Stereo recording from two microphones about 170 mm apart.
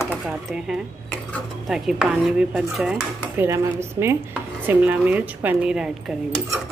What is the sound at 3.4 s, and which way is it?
Speech, 15° right (ahead or behind).